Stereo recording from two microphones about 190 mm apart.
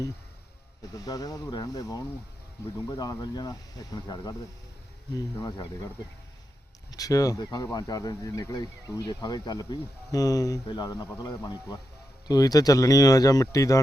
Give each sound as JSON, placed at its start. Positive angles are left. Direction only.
{"t": 0.9, "sound": "speech", "side_deg": 20}
{"t": 6.9, "sound": "speech", "side_deg": 20}